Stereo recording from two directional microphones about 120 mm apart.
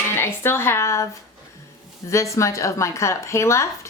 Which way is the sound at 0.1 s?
20° left (ahead or behind).